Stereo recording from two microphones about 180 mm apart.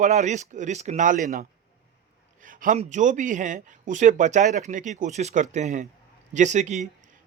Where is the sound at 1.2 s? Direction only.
55° right (ahead or behind).